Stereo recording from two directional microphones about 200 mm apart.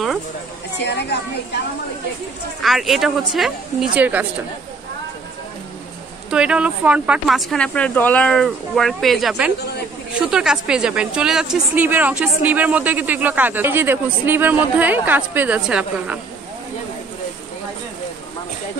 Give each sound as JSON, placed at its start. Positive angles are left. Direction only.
{"t": 0.7, "sound": "a woman's voice", "side_deg": 55}
{"t": 2.6, "sound": "speech", "side_deg": 0}
{"t": 6.3, "sound": "a woman's voice", "side_deg": -5}